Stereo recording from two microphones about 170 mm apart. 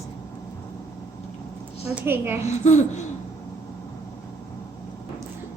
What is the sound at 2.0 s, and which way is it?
Speech, 10° right (ahead or behind).